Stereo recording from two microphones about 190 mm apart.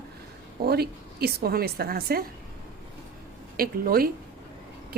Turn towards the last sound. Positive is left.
turn(degrees=-50)  # may be behind; listen again after turning